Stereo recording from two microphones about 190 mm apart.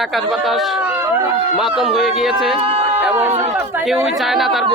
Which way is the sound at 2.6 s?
30° right (ahead or behind).